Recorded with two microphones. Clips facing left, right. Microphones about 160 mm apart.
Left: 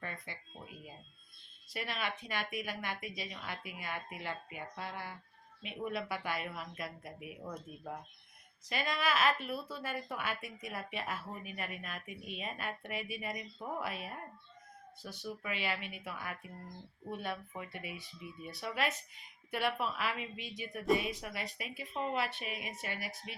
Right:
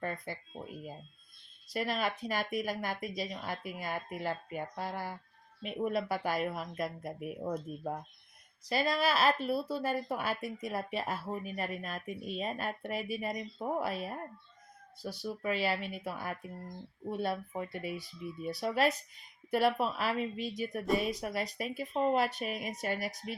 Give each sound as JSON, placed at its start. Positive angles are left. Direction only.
{"t": 0.0, "sound": "speech", "side_deg": -40}